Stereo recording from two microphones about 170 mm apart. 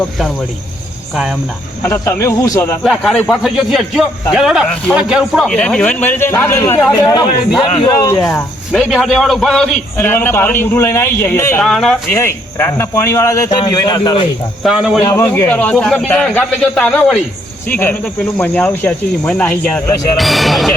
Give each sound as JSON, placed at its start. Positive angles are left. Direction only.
{"t": 1.1, "sound": "a man's voice", "side_deg": 0}
{"t": 1.8, "sound": "a man's voice", "side_deg": 15}
{"t": 2.8, "sound": "a man's voice", "side_deg": 0}
{"t": 8.2, "sound": "a man's voice", "side_deg": 5}
{"t": 11.6, "sound": "a man's voice", "side_deg": 0}
{"t": 12.1, "sound": "a man's voice", "side_deg": 15}
{"t": 14.6, "sound": "a man's voice", "side_deg": 0}
{"t": 15.0, "sound": "a man's voice", "side_deg": 20}